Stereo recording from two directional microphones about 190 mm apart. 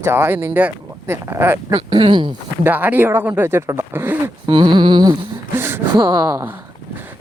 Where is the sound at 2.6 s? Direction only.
10° right (ahead or behind).